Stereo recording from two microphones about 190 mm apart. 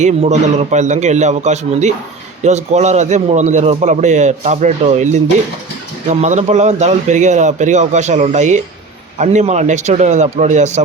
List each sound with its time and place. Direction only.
0.0 s speech: 35° right (ahead or behind)